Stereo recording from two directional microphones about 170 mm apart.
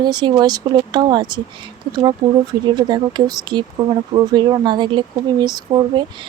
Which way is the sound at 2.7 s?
25° right (ahead or behind).